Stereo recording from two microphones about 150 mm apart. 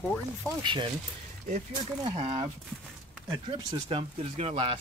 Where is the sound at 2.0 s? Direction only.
35° right (ahead or behind).